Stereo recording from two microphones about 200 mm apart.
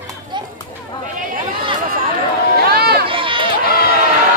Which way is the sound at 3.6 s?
50° left (ahead or behind).